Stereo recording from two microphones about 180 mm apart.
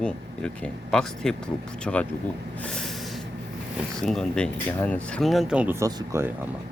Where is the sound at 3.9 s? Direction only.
Centre (ahead or behind); by 6.3 s 15° right (ahead or behind).